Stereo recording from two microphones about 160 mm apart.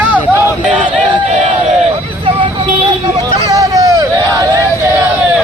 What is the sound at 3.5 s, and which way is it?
Hubbub, 20° right (ahead or behind).